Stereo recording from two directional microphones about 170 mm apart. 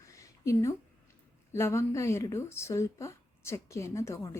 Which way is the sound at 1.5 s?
15° left (ahead or behind).